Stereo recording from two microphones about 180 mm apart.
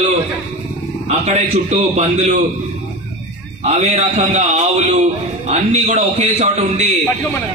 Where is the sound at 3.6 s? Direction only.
35° right (ahead or behind).